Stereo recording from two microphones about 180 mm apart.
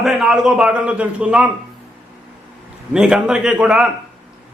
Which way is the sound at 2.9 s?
5° right (ahead or behind).